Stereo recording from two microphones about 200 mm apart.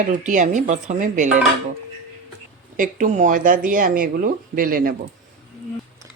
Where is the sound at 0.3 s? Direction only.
40° right (ahead or behind).